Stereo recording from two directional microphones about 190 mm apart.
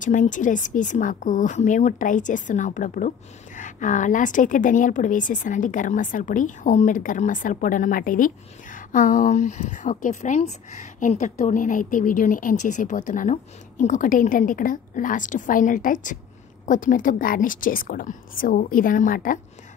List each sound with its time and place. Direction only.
0.0 s a woman's voice: 40° left (ahead or behind)